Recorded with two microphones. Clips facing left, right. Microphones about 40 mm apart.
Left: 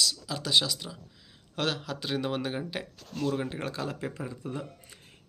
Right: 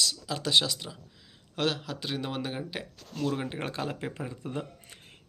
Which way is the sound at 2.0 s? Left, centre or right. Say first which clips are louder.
Left 3 dB; centre.